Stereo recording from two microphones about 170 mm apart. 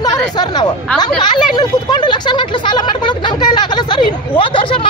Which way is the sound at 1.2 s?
25° left (ahead or behind).